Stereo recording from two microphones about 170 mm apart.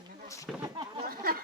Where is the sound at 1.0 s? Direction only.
60° right (ahead or behind).